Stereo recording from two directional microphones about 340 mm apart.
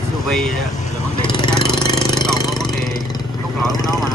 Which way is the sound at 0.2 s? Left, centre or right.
Centre.